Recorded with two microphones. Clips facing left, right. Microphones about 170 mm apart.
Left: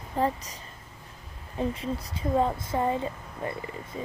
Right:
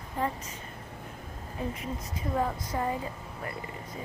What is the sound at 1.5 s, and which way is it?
Speech, 30° left (ahead or behind).